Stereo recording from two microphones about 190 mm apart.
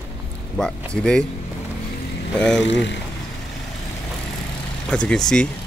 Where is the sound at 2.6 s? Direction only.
70° left (ahead or behind).